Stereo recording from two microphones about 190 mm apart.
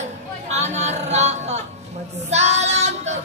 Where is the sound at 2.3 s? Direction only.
35° right (ahead or behind).